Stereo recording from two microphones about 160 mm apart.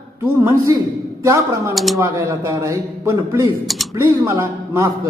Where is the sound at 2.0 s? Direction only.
20° right (ahead or behind).